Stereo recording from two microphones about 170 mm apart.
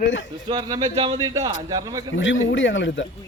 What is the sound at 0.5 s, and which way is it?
A man's voice, 25° right (ahead or behind).